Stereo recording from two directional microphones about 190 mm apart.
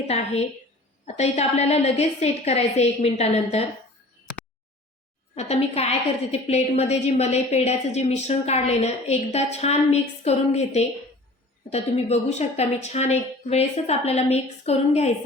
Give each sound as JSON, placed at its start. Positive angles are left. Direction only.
{"t": 1.0, "sound": "a woman's voice", "side_deg": 35}
{"t": 5.3, "sound": "a woman's voice", "side_deg": 35}